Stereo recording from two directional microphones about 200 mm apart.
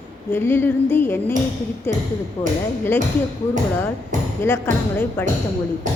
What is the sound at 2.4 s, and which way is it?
Speech, 30° left (ahead or behind).